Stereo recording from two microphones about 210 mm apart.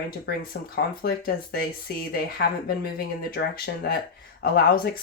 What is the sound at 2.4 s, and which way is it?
Speech, 45° left (ahead or behind).